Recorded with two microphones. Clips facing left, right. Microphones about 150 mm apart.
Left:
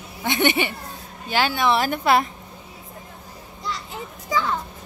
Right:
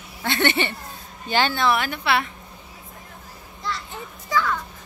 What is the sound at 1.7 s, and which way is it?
Speech, 40° left (ahead or behind).